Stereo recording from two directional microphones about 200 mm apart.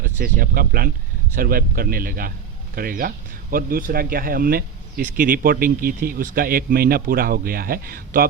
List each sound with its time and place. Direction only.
0.0 s speech: 45° right (ahead or behind)